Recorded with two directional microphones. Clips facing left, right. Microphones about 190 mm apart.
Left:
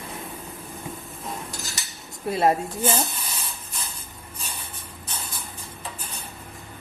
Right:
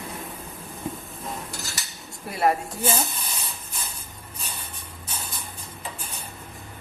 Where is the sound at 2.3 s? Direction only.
25° left (ahead or behind).